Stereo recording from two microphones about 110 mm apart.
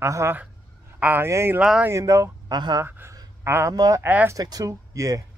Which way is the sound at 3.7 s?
35° right (ahead or behind).